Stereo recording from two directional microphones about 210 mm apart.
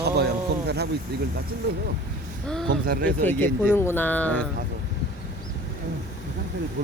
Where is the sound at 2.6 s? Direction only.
45° right (ahead or behind).